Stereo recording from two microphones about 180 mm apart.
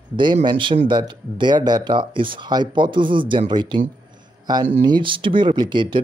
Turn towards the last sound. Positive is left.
turn(degrees=-25)  # may be behind; listen again after turning